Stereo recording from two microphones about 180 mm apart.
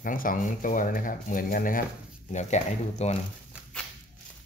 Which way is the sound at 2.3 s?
40° left (ahead or behind).